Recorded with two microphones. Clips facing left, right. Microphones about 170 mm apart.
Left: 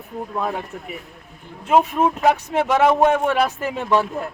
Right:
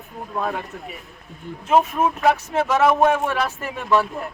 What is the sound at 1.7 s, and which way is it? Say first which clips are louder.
Speech: left 1 dB; 15° left (ahead or behind).